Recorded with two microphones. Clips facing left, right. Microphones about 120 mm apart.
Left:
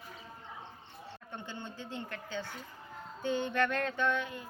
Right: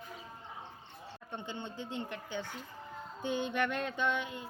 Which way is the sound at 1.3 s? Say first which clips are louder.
Right 3 dB; 20° right (ahead or behind).